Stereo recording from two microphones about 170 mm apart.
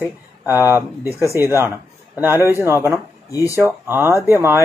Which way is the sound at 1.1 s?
15° left (ahead or behind).